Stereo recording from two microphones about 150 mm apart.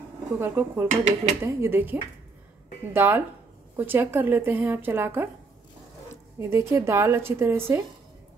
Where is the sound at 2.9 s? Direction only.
15° right (ahead or behind).